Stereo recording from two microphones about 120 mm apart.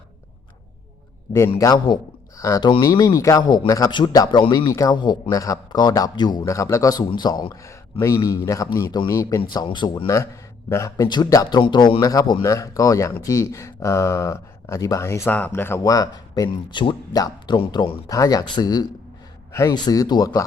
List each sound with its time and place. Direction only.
1.5 s speech: 30° left (ahead or behind)
2.8 s a man's voice: 25° left (ahead or behind)
10.7 s a man's voice: 25° left (ahead or behind)
15.3 s speech: 15° left (ahead or behind)
15.8 s speech: 30° left (ahead or behind)